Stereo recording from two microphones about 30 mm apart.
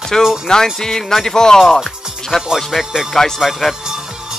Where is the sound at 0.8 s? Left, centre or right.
Centre.